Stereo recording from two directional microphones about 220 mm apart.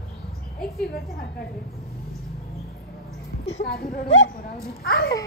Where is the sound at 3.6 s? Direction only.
45° left (ahead or behind).